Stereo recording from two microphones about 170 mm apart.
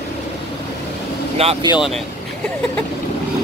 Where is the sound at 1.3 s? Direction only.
40° right (ahead or behind).